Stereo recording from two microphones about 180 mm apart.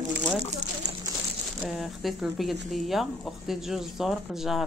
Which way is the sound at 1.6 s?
Centre (ahead or behind).